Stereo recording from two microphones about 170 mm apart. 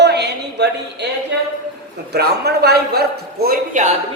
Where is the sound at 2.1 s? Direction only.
70° right (ahead or behind); by 3.9 s 55° right (ahead or behind).